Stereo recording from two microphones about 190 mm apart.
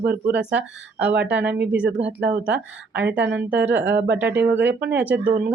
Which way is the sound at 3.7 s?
70° right (ahead or behind).